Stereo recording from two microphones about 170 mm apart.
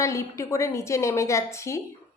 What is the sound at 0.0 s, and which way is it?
A woman's voice, 15° left (ahead or behind).